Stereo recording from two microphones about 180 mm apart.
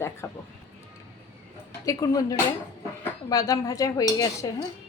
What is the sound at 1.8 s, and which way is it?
A woman's voice, 20° left (ahead or behind).